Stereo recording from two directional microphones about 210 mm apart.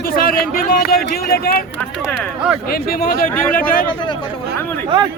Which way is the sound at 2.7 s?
45° left (ahead or behind).